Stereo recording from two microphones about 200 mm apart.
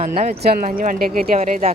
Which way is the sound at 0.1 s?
50° right (ahead or behind).